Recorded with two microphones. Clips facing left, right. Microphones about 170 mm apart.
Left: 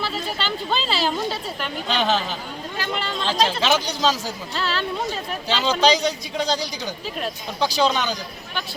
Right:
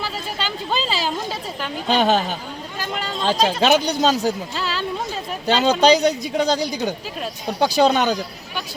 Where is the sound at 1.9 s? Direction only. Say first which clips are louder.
Right 5 dB; 45° right (ahead or behind).